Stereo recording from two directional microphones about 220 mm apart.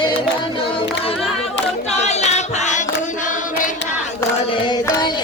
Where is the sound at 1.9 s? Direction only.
30° left (ahead or behind).